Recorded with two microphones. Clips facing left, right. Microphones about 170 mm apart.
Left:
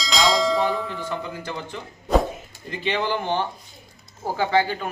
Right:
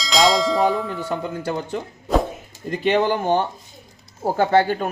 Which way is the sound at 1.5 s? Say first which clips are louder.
Right 7 dB; 45° right (ahead or behind).